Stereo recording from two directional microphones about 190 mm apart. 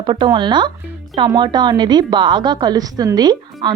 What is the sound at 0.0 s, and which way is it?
A woman's voice, 25° right (ahead or behind).